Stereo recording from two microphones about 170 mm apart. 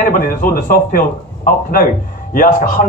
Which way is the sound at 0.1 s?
55° left (ahead or behind).